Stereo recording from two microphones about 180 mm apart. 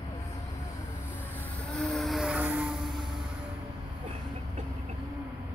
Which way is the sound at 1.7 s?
Centre (ahead or behind).